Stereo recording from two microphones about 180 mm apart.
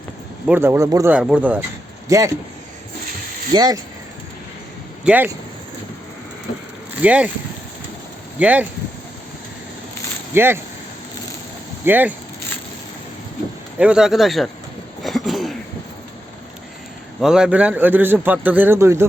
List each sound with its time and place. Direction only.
0.4 s a man's voice: 10° right (ahead or behind)
1.1 s a man's voice: 5° right (ahead or behind)
3.5 s speech: 25° right (ahead or behind)
5.0 s a man's voice: 10° right (ahead or behind)
7.0 s a man's voice: 5° right (ahead or behind)
8.4 s a man's voice: 10° right (ahead or behind)
10.3 s a man's voice: 10° right (ahead or behind)
11.9 s a man's voice: 10° right (ahead or behind)
13.7 s speech: 5° right (ahead or behind)
15.0 s throat clearing: centre (ahead or behind)
17.2 s a man's voice: 5° right (ahead or behind)